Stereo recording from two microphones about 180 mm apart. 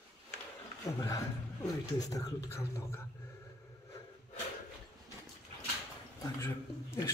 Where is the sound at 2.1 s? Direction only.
15° left (ahead or behind).